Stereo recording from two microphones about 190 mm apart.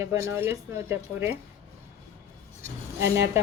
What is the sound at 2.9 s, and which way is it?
Speech, 15° right (ahead or behind).